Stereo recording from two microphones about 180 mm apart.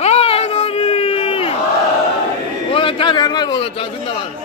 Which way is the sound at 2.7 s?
30° left (ahead or behind).